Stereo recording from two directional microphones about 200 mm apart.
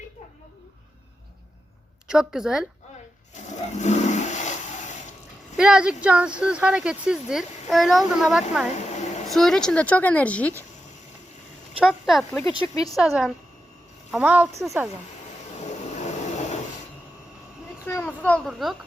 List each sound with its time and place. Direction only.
2.0 s speech: 5° right (ahead or behind)
3.8 s toilet flush: 35° left (ahead or behind)
5.5 s speech: 5° right (ahead or behind)
8.8 s a sound: 35° left (ahead or behind)
9.3 s speech: centre (ahead or behind)
11.8 s speech: centre (ahead or behind)
12.7 s speech: 20° left (ahead or behind)
13.0 s speech: centre (ahead or behind)
17.8 s speech: 10° left (ahead or behind)